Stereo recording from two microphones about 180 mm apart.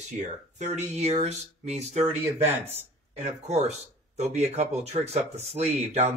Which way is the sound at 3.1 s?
35° right (ahead or behind).